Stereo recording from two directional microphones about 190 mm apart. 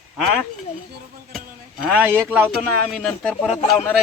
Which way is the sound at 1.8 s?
5° right (ahead or behind).